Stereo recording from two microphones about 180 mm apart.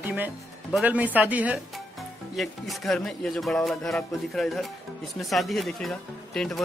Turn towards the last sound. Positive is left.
turn(degrees=5)  # may be behind; listen again after turning